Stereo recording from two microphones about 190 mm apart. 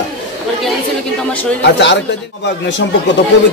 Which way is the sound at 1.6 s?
65° left (ahead or behind).